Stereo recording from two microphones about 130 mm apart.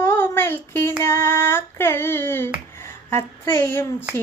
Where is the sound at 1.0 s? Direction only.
20° left (ahead or behind).